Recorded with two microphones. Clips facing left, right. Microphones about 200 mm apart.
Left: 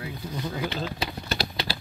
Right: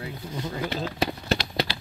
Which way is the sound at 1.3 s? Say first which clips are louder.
Right 4 dB; 30° left (ahead or behind).